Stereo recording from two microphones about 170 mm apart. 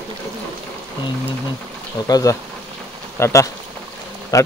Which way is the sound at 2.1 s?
20° left (ahead or behind).